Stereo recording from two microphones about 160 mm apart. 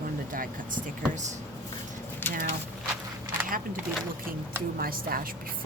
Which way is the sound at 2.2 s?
15° left (ahead or behind).